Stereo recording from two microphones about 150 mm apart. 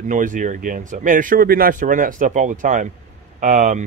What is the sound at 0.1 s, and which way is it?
Speech, 60° right (ahead or behind).